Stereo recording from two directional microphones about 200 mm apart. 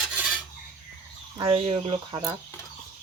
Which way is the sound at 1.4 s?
30° right (ahead or behind).